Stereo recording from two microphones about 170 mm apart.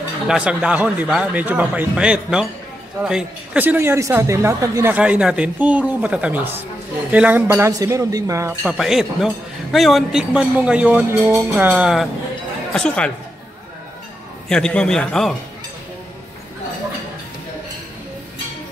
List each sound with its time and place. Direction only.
0.3 s speech: 5° right (ahead or behind)
8.6 s a man's voice: centre (ahead or behind)
14.5 s a man's voice: 5° left (ahead or behind)